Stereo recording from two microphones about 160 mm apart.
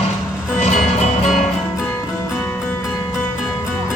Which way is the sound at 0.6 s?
45° left (ahead or behind).